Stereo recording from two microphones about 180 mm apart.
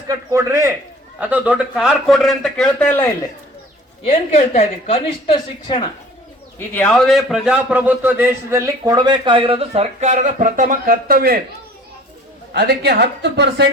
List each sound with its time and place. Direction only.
0.1 s a man's voice: 20° right (ahead or behind); by 3.1 s 10° left (ahead or behind)
4.0 s a woman's voice: 35° left (ahead or behind)
6.7 s a man's voice: 5° left (ahead or behind); by 11.3 s 55° right (ahead or behind)
12.5 s speech: 65° right (ahead or behind)